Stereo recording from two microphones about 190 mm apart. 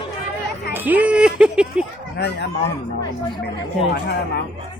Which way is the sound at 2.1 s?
60° left (ahead or behind).